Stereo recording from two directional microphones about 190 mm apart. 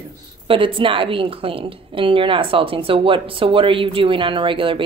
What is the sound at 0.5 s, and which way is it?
A woman's voice, 25° right (ahead or behind).